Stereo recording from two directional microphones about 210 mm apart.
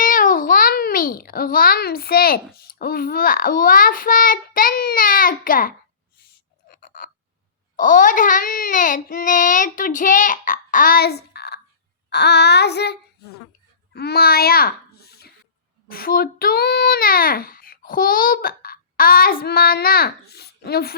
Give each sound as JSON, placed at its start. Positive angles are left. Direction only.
{"t": 0.0, "sound": "a child's voice", "side_deg": 40}
{"t": 6.7, "sound": "a sound", "side_deg": 40}
{"t": 7.8, "sound": "a child's voice", "side_deg": 40}